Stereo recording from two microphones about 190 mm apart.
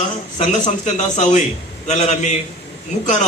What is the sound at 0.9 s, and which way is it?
A man's voice, 40° left (ahead or behind).